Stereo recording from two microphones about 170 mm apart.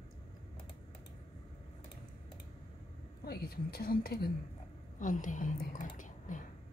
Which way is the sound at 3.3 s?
65° left (ahead or behind).